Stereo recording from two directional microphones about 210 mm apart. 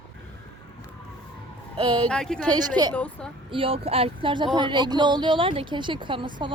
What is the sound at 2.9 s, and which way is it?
Speech, 5° left (ahead or behind).